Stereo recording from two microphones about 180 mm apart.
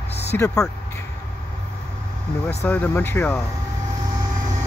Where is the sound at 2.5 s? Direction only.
10° left (ahead or behind).